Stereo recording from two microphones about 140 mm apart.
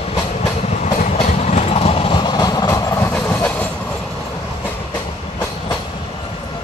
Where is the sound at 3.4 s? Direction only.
10° left (ahead or behind).